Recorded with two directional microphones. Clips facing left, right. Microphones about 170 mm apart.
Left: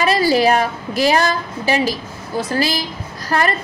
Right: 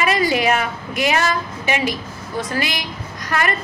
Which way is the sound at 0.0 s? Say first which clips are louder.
Left 3 dB; 35° left (ahead or behind).